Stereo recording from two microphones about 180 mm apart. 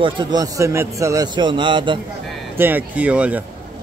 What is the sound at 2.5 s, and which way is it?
Speech, 10° right (ahead or behind).